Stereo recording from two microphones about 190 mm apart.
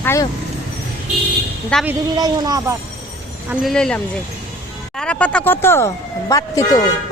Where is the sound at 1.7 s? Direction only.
5° left (ahead or behind).